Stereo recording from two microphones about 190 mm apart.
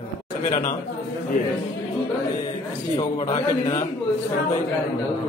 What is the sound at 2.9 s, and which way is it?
Speech, 25° left (ahead or behind).